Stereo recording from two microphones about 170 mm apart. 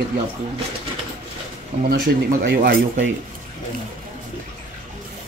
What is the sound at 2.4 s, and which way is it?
Speech, 80° right.